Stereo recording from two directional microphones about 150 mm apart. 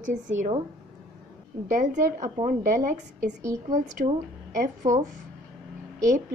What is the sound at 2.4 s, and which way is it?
A woman's voice, 60° right (ahead or behind).